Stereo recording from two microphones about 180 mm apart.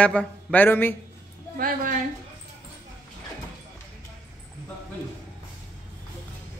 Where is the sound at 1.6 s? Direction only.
50° right (ahead or behind).